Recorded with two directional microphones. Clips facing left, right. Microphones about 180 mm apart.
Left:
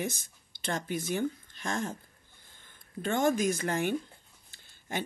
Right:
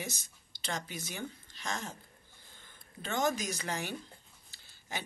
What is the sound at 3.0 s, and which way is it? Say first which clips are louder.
Speech: left 6 dB; 50° left (ahead or behind).